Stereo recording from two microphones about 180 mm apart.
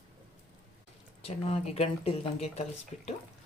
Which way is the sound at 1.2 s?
35° left (ahead or behind).